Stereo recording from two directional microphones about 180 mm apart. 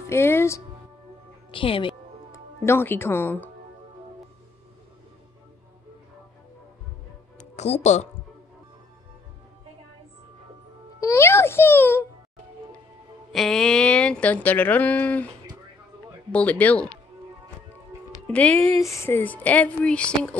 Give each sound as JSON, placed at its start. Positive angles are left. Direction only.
{"t": 0.0, "sound": "speech", "side_deg": 15}
{"t": 1.5, "sound": "speech", "side_deg": 30}
{"t": 2.3, "sound": "speech", "side_deg": 15}
{"t": 7.5, "sound": "speech", "side_deg": 40}
{"t": 11.0, "sound": "music", "side_deg": 15}
{"t": 13.3, "sound": "speech", "side_deg": 0}
{"t": 16.3, "sound": "speech", "side_deg": 10}
{"t": 18.2, "sound": "speech", "side_deg": 10}